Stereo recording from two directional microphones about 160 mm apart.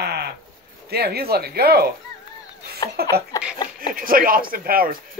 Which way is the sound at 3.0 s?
80° right.